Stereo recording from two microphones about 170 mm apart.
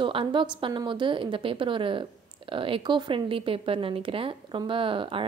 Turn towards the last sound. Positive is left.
turn(degrees=-30)  # may be behind; listen again after turning